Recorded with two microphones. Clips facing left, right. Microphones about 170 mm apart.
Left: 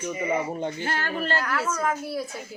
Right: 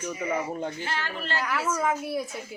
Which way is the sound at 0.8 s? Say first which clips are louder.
Left 5 dB; 45° left (ahead or behind).